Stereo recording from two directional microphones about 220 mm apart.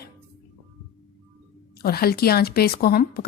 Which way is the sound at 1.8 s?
45° left (ahead or behind).